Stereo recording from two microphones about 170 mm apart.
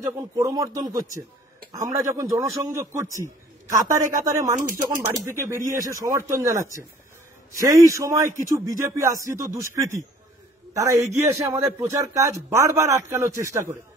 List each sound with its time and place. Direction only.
0.0 s a man's voice: 20° right (ahead or behind)